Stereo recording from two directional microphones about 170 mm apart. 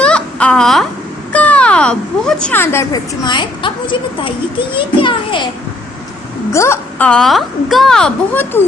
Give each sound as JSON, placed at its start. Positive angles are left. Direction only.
{"t": 0.0, "sound": "a sound", "side_deg": 5}
{"t": 1.3, "sound": "speech", "side_deg": 10}
{"t": 3.2, "sound": "speech", "side_deg": 25}
{"t": 6.5, "sound": "a woman's voice", "side_deg": 15}